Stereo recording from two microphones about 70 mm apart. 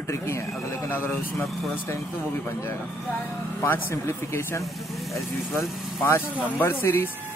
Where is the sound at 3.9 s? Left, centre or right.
Left.